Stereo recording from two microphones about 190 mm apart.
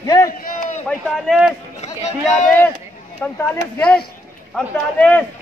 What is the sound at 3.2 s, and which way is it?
Speech, 10° left (ahead or behind).